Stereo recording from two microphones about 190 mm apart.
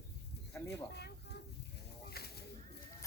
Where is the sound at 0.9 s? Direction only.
60° left (ahead or behind).